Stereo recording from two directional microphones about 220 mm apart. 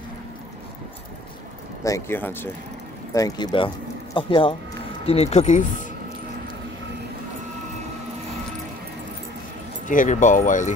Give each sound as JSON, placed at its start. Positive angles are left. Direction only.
{"t": 1.8, "sound": "speech", "side_deg": 15}
{"t": 9.8, "sound": "speech", "side_deg": 35}